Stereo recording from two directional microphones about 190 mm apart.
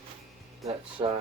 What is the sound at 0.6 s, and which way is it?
Music, 25° right (ahead or behind).